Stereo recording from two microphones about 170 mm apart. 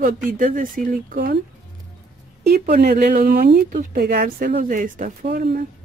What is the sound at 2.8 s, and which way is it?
Speech, 65° right (ahead or behind).